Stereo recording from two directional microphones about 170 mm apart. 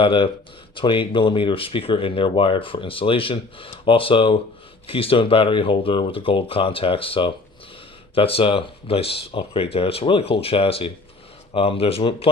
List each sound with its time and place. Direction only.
0.0 s speech: 30° left (ahead or behind)